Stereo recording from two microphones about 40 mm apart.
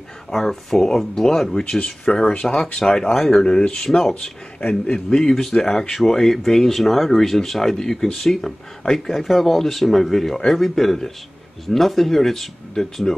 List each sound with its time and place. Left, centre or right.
0.3 s speech: centre
1.5 s speech: left
4.6 s a man's voice: left
4.9 s speech: centre